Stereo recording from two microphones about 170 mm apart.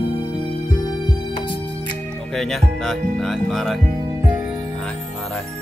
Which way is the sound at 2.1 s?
5° left (ahead or behind).